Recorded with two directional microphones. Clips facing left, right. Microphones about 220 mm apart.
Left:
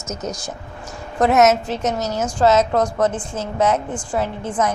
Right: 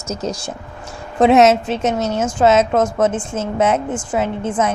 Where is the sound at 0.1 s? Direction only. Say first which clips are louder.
Right 4 dB; 30° right (ahead or behind).